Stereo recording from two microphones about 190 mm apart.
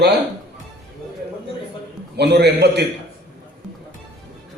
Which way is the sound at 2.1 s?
60° right (ahead or behind).